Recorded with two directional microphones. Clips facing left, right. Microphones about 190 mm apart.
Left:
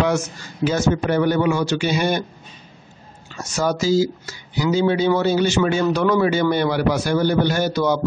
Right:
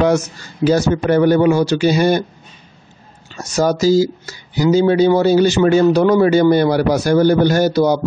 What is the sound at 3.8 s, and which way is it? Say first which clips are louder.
A man's voice: right 5 dB; 40° right (ahead or behind).